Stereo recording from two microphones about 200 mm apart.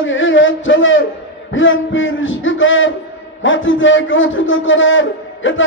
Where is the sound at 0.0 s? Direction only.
75° left (ahead or behind).